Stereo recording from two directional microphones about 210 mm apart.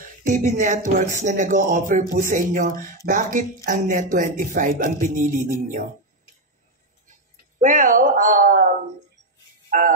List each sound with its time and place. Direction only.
0.0 s speech: 40° right (ahead or behind)
7.6 s speech: 35° right (ahead or behind)
9.7 s music: 40° right (ahead or behind)